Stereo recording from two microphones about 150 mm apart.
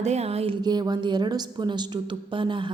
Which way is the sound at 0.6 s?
30° right (ahead or behind).